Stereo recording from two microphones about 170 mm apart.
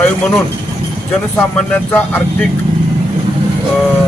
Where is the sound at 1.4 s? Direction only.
10° left (ahead or behind).